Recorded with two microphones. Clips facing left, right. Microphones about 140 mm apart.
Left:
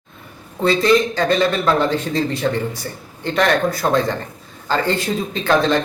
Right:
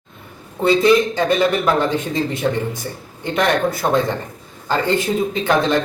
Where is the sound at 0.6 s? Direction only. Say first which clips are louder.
Right 1 dB; 15° right (ahead or behind).